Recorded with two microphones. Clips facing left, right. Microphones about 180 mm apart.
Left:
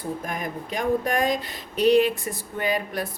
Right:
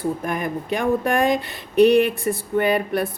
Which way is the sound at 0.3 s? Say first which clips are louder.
Right 6 dB; 60° right (ahead or behind).